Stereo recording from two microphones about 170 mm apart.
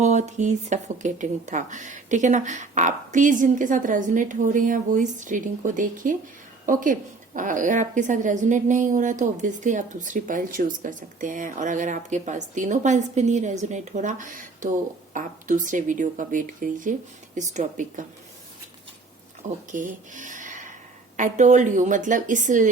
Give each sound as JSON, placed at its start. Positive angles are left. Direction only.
{"t": 0.0, "sound": "a woman's voice", "side_deg": -45}
{"t": 19.4, "sound": "a woman's voice", "side_deg": -50}